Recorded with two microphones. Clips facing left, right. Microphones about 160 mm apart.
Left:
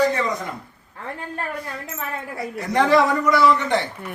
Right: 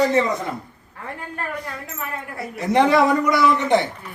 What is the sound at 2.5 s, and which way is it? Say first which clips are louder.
Speech: right 1 dB; 20° right (ahead or behind).